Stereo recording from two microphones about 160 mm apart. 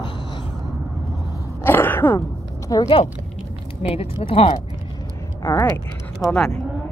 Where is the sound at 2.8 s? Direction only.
35° left (ahead or behind).